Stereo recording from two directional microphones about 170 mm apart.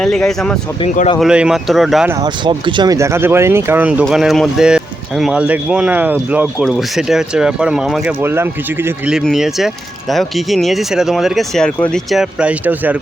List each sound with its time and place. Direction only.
0.0 s speech: 5° left (ahead or behind)
2.0 s speech: 20° right (ahead or behind); by 8.1 s 5° right (ahead or behind)
8.2 s speech: 15° right (ahead or behind)
9.1 s speech: centre (ahead or behind)